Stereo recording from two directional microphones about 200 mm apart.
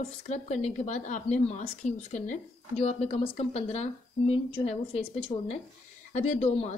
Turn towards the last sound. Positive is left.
turn(degrees=30)  # may be behind; listen again after turning